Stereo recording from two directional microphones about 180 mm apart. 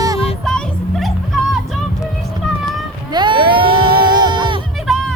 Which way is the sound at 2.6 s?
25° right (ahead or behind).